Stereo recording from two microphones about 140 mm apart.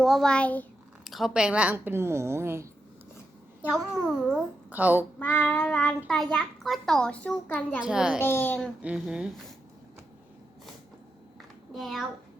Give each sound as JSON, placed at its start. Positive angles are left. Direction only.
{"t": 0.0, "sound": "a child's voice", "side_deg": 0}
{"t": 1.0, "sound": "a woman's voice", "side_deg": 0}
{"t": 4.0, "sound": "a child's voice", "side_deg": 0}
{"t": 4.7, "sound": "a woman's voice", "side_deg": -10}
{"t": 5.2, "sound": "child singing", "side_deg": 10}
{"t": 6.1, "sound": "a child's voice", "side_deg": 0}
{"t": 7.8, "sound": "a child's voice", "side_deg": -5}
{"t": 8.2, "sound": "child singing", "side_deg": 15}
{"t": 8.8, "sound": "a woman's voice", "side_deg": -10}
{"t": 11.7, "sound": "a child's voice", "side_deg": 0}